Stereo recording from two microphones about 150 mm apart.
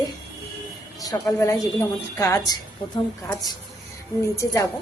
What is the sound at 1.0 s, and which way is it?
A woman's voice, 25° left (ahead or behind).